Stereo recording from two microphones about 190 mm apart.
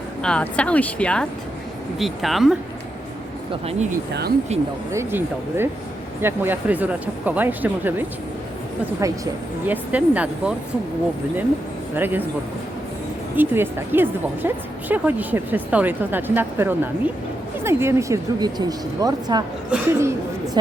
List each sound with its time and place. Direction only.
0.2 s speech: 5° left (ahead or behind)
3.7 s speech: 35° right (ahead or behind)
4.9 s speech: 15° right (ahead or behind)
11.9 s speech: 10° right (ahead or behind)
13.3 s speech: 10° right (ahead or behind)